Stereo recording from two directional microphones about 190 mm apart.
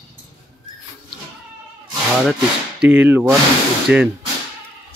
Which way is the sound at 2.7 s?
10° right (ahead or behind).